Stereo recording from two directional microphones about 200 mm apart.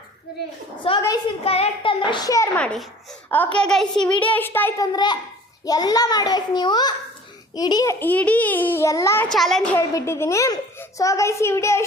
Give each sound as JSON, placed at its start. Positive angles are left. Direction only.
{"t": 0.9, "sound": "a child's voice", "side_deg": 30}
{"t": 2.6, "sound": "a child's voice", "side_deg": 5}
{"t": 9.3, "sound": "a child's voice", "side_deg": 0}
{"t": 9.9, "sound": "a child's voice", "side_deg": 15}